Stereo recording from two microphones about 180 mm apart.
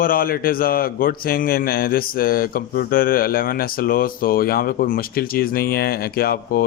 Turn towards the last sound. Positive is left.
turn(degrees=55)  # may be behind; listen again after turning